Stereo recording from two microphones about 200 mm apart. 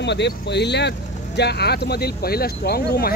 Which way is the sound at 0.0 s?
60° left (ahead or behind).